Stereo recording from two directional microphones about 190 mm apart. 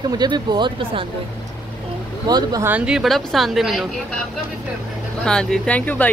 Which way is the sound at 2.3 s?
20° right (ahead or behind).